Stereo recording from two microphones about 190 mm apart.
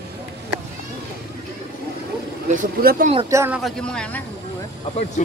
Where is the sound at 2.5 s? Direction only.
45° right (ahead or behind).